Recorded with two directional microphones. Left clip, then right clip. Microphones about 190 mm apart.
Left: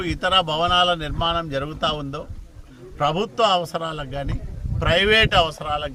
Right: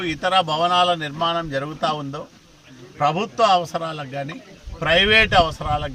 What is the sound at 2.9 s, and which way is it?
Speech, 5° left (ahead or behind).